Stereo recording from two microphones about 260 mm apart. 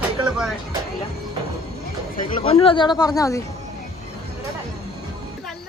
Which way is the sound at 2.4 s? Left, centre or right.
Left.